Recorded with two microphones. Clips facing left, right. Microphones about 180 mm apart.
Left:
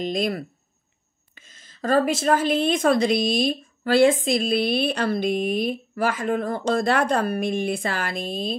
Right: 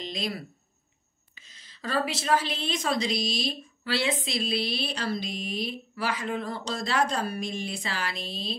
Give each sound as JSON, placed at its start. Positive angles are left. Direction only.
{"t": 0.0, "sound": "a woman's voice", "side_deg": 50}